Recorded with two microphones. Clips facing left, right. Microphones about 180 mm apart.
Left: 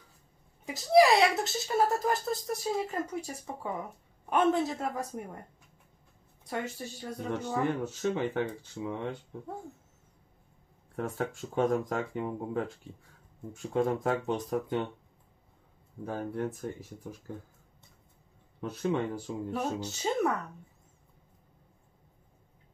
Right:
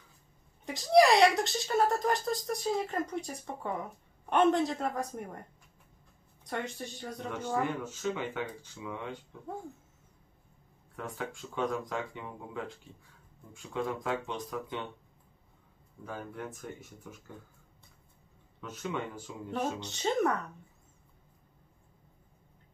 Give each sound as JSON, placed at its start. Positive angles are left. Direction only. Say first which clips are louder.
{"t": 0.7, "sound": "speech", "louder": "even", "side_deg": 5}
{"t": 6.4, "sound": "speech", "louder": "left 1 dB", "side_deg": 5}
{"t": 7.8, "sound": "speech", "louder": "left 4 dB", "side_deg": 35}
{"t": 11.0, "sound": "speech", "louder": "left 5 dB", "side_deg": 40}
{"t": 16.1, "sound": "speech", "louder": "left 7 dB", "side_deg": 35}
{"t": 18.6, "sound": "speech", "louder": "left 6 dB", "side_deg": 35}
{"t": 19.5, "sound": "speech", "louder": "right 1 dB", "side_deg": 5}